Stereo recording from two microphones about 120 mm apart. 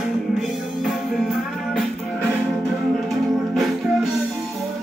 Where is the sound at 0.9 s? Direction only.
Centre (ahead or behind).